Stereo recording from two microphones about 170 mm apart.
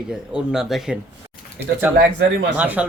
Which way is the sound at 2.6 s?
10° right (ahead or behind).